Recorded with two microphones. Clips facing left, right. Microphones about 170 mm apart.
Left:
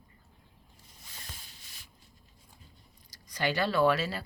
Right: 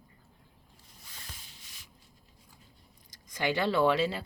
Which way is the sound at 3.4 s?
20° right (ahead or behind).